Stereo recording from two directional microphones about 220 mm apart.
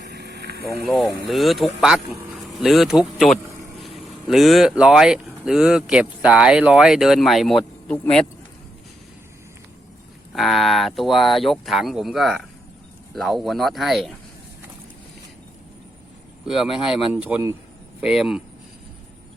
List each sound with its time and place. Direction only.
0.0 s vehicle: 50° right (ahead or behind)
0.9 s speech: centre (ahead or behind)
10.3 s speech: centre (ahead or behind)
16.7 s speech: centre (ahead or behind)